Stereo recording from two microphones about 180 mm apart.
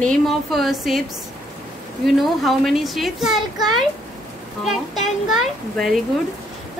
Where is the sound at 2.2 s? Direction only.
Centre (ahead or behind).